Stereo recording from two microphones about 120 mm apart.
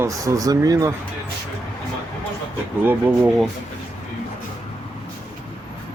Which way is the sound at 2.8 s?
15° right (ahead or behind).